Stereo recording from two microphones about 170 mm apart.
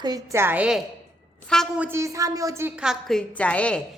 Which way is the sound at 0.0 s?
20° right (ahead or behind).